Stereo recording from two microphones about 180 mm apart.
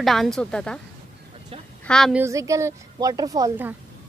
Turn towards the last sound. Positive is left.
turn(degrees=-15)  # may be behind; listen again after turning